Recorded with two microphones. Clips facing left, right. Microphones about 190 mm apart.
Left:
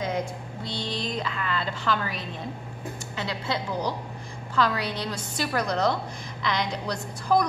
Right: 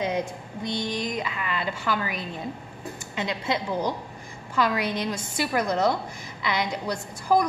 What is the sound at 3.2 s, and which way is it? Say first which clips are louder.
A woman's voice: right 3 dB; 15° right (ahead or behind).